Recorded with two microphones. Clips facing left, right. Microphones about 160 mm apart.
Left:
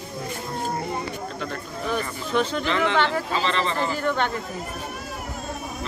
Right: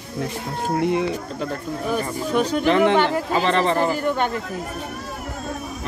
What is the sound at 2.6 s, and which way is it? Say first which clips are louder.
Speech: right 6 dB; 50° right (ahead or behind).